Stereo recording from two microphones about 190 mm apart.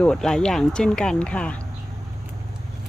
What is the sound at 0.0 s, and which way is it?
Speech, 5° left (ahead or behind).